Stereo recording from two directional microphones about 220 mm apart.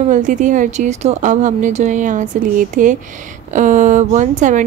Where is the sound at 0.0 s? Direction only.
35° right (ahead or behind).